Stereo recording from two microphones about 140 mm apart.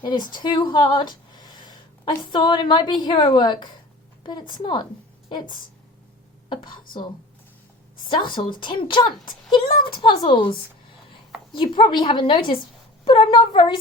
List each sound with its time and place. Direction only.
0.0 s a woman's voice: 30° left (ahead or behind)
8.0 s a woman's voice: 35° left (ahead or behind)